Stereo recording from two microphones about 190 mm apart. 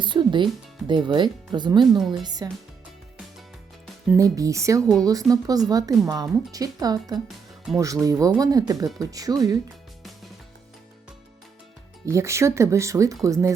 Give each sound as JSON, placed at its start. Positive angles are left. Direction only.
{"t": 0.0, "sound": "speech", "side_deg": -25}
{"t": 4.2, "sound": "speech", "side_deg": -15}
{"t": 12.0, "sound": "speech", "side_deg": -15}